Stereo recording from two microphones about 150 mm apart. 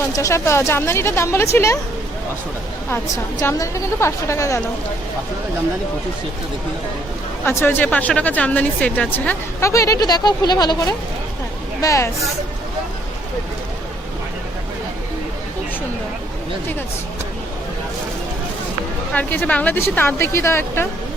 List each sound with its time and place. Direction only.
0.0 s a woman's voice: 20° left (ahead or behind)
3.4 s a woman's voice: 20° left (ahead or behind)
7.4 s a woman's voice: 15° left (ahead or behind)
19.1 s speech: 10° left (ahead or behind)